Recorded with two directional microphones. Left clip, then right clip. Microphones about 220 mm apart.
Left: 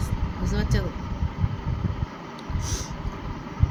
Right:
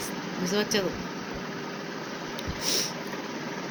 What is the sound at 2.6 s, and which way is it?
Vehicle, 20° left (ahead or behind).